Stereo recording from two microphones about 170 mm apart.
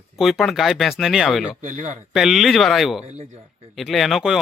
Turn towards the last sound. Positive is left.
turn(degrees=0)  # may be behind; listen again after turning